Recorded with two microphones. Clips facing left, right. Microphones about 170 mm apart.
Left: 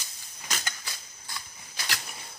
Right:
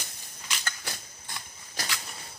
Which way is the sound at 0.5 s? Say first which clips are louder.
Left 3 dB; 40° left (ahead or behind).